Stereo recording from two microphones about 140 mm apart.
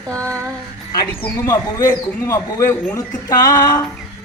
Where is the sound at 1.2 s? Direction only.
20° left (ahead or behind).